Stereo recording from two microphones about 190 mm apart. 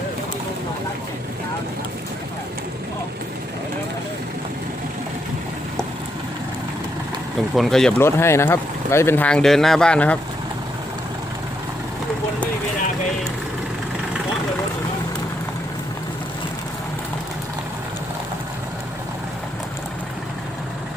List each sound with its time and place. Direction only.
7.5 s speech: centre (ahead or behind)